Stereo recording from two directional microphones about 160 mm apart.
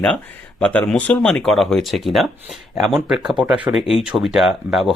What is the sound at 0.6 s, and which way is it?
Speech, 5° left (ahead or behind).